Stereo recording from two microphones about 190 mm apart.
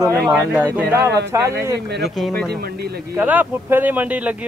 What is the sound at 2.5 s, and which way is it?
Speech, 55° right (ahead or behind).